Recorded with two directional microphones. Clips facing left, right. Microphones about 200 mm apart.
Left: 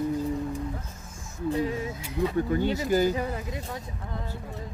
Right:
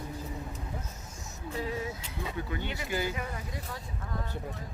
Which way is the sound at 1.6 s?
25° left (ahead or behind).